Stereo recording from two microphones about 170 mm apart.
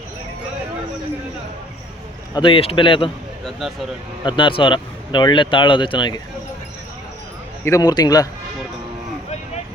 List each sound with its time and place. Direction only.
2.3 s a man's voice: 30° left (ahead or behind)
4.2 s speech: 30° left (ahead or behind)
7.6 s speech: 20° left (ahead or behind)